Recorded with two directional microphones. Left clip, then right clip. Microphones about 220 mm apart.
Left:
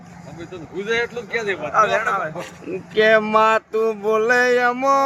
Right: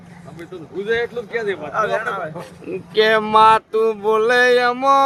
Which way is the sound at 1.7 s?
10° right (ahead or behind).